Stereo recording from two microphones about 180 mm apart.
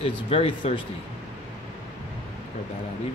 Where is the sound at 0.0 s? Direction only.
30° left (ahead or behind).